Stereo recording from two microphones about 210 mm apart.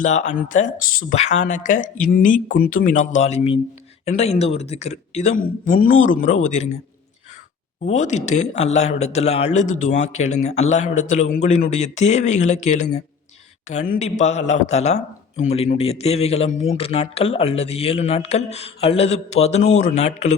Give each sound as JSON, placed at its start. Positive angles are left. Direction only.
{"t": 0.0, "sound": "speech", "side_deg": 35}
{"t": 7.9, "sound": "speech", "side_deg": 35}